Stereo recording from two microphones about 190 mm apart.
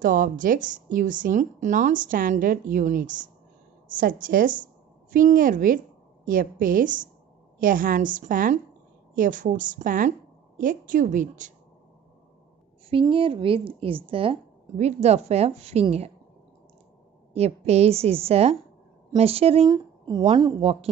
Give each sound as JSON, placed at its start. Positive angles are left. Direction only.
{"t": 0.0, "sound": "a woman's voice", "side_deg": -45}
{"t": 12.9, "sound": "speech", "side_deg": -30}
{"t": 17.3, "sound": "a woman's voice", "side_deg": -35}